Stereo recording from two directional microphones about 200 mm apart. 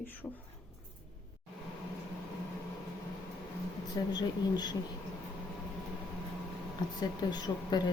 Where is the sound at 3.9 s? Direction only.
20° left (ahead or behind).